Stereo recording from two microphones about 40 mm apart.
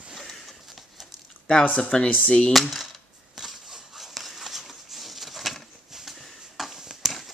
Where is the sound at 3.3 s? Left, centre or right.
Centre.